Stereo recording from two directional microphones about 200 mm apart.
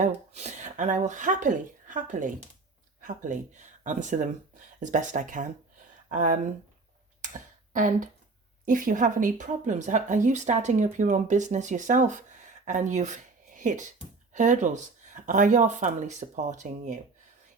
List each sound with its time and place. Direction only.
0.0 s speech: 35° right (ahead or behind)
7.2 s a sound: 40° right (ahead or behind)
8.6 s speech: 40° right (ahead or behind)